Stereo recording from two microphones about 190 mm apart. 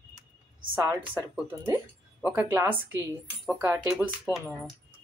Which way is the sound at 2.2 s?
10° right (ahead or behind).